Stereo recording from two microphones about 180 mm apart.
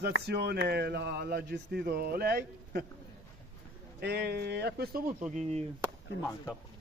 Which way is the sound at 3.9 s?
65° right (ahead or behind).